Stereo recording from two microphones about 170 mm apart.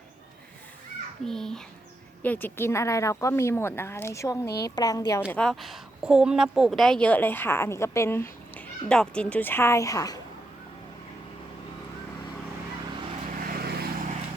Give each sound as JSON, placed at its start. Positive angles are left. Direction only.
{"t": 1.2, "sound": "a child's voice", "side_deg": 5}
{"t": 5.3, "sound": "a woman's voice", "side_deg": 5}
{"t": 13.4, "sound": "vehicle", "side_deg": -65}